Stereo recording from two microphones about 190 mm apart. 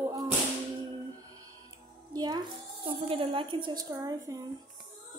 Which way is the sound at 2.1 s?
20° right (ahead or behind).